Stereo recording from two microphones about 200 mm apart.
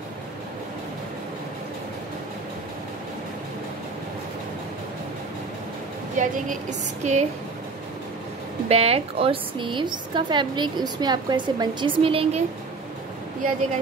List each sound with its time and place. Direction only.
6.1 s a woman's voice: 35° right (ahead or behind)
8.6 s a woman's voice: 30° right (ahead or behind)